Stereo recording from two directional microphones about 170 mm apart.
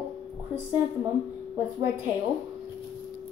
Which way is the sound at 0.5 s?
15° right (ahead or behind).